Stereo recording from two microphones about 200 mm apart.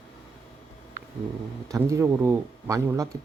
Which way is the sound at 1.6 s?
15° right (ahead or behind).